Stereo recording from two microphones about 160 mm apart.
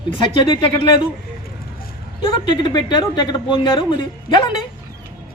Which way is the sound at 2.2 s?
30° left (ahead or behind).